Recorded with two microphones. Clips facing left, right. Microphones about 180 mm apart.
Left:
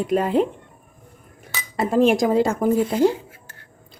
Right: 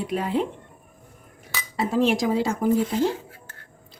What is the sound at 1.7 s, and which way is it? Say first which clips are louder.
A woman's voice: left 4 dB; 50° left (ahead or behind).